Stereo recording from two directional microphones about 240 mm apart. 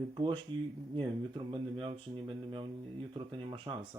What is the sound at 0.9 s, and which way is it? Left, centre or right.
Speech, right.